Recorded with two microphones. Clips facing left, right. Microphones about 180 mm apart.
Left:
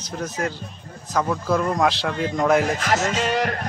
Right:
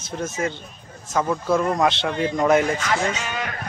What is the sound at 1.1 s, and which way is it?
A man's voice, 5° right (ahead or behind).